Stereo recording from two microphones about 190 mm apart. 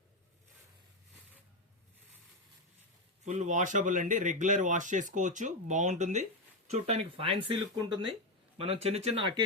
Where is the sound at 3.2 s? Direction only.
40° right (ahead or behind).